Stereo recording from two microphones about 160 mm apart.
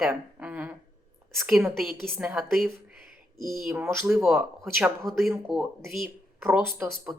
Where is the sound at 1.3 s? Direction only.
10° right (ahead or behind).